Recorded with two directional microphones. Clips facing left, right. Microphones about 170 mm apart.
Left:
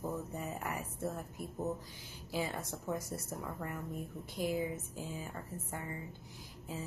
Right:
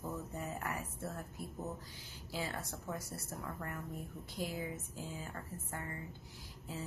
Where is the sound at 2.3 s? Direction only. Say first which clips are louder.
Left 4 dB; 15° left (ahead or behind).